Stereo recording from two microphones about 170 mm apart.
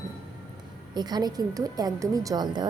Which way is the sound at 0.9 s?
25° right (ahead or behind).